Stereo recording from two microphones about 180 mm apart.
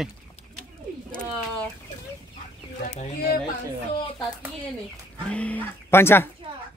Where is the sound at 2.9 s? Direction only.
40° left (ahead or behind).